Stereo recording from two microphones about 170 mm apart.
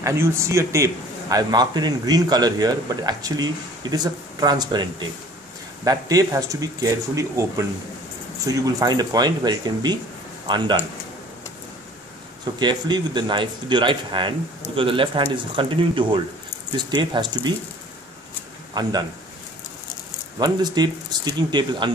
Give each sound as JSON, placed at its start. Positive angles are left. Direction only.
{"t": 0.0, "sound": "a man's voice", "side_deg": -15}
{"t": 12.5, "sound": "a man's voice", "side_deg": -25}
{"t": 18.7, "sound": "speech", "side_deg": -25}
{"t": 20.3, "sound": "a man's voice", "side_deg": -25}